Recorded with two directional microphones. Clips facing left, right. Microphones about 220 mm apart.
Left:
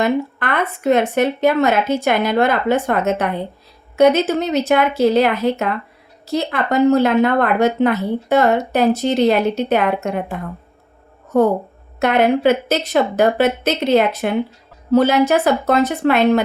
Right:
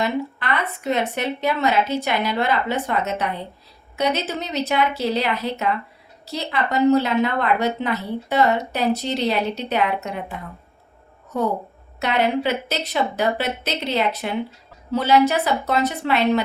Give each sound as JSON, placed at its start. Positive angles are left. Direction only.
{"t": 0.0, "sound": "speech", "side_deg": 50}
{"t": 11.9, "sound": "speech", "side_deg": 50}